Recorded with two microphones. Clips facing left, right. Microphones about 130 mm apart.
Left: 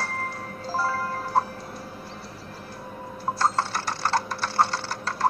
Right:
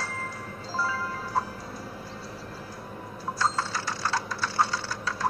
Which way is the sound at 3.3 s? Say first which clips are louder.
Left 3 dB; 60° left (ahead or behind).